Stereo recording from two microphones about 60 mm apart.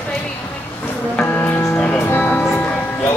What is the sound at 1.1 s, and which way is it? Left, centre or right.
Music, left.